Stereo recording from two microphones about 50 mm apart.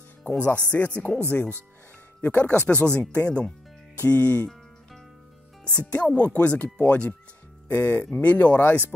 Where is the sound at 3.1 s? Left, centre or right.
Left.